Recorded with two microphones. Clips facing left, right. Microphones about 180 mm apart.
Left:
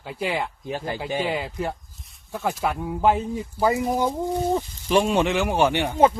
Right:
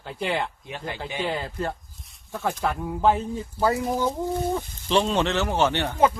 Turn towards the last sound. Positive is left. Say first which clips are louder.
# left 2 dB
turn(degrees=10)  # may be behind; listen again after turning